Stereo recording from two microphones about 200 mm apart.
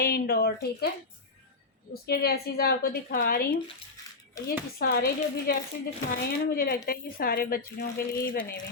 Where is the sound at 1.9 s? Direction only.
50° left (ahead or behind).